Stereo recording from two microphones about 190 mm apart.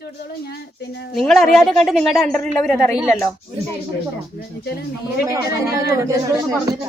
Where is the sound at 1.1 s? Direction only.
Centre (ahead or behind).